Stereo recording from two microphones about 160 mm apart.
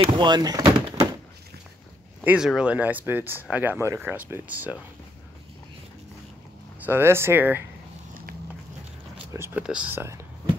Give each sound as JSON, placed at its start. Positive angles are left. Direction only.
{"t": 0.0, "sound": "a sound", "side_deg": -30}
{"t": 2.2, "sound": "speech", "side_deg": -5}
{"t": 6.8, "sound": "speech", "side_deg": -15}
{"t": 9.3, "sound": "speech", "side_deg": -15}